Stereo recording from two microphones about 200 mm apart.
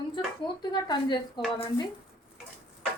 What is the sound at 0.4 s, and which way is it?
Speech, 20° left (ahead or behind).